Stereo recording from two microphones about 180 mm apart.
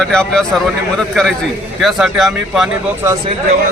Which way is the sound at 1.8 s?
Centre (ahead or behind).